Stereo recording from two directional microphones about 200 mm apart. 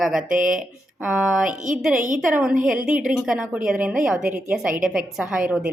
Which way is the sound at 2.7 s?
5° right (ahead or behind).